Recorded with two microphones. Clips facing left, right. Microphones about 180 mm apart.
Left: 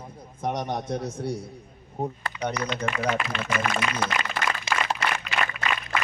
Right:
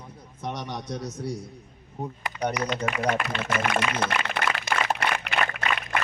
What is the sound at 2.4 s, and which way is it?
Speech, 15° right (ahead or behind).